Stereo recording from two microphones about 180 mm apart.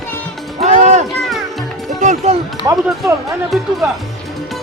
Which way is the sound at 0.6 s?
40° right (ahead or behind).